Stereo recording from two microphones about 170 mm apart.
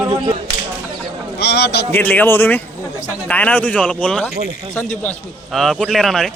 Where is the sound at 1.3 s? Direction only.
75° left (ahead or behind).